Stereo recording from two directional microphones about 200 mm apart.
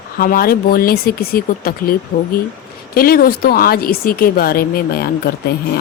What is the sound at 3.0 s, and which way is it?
Speech, 45° left (ahead or behind).